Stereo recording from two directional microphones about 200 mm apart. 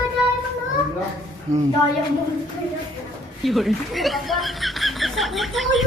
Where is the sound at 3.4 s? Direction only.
Centre (ahead or behind).